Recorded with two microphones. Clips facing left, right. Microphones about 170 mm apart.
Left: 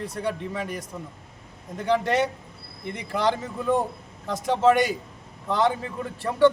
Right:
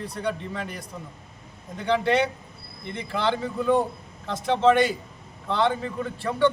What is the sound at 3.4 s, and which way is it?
A man's voice, 5° left (ahead or behind).